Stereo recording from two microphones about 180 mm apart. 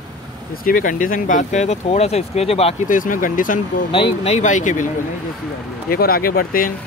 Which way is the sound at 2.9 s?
50° left (ahead or behind).